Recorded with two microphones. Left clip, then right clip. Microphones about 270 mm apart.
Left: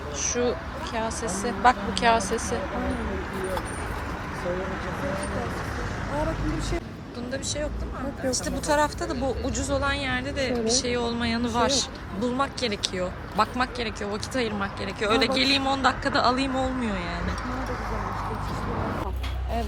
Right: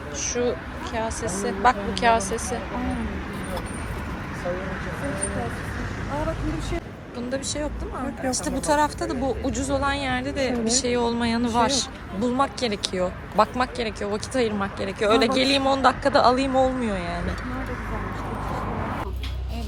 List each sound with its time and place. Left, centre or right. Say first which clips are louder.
0.2 s a sound: right 1 dB; centre
0.9 s a woman's voice: right 2 dB; centre
2.6 s speech: even; left
7.3 s a woman's voice: right 2 dB; centre